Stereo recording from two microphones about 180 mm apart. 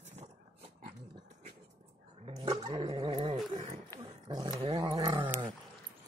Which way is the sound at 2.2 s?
35° right (ahead or behind).